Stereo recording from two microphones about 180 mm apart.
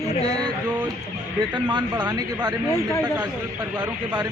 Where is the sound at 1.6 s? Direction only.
25° right (ahead or behind).